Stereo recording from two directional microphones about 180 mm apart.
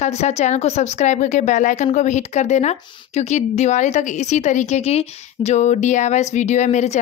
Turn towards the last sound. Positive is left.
turn(degrees=40)  # may be behind; listen again after turning